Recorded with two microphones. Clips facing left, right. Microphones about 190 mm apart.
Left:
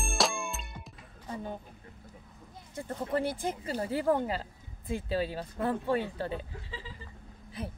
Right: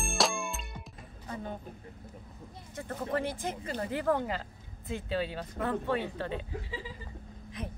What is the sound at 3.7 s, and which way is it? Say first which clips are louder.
Speech: left 2 dB; 35° left (ahead or behind).